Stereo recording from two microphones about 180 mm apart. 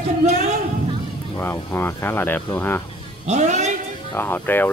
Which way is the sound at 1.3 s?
15° left (ahead or behind).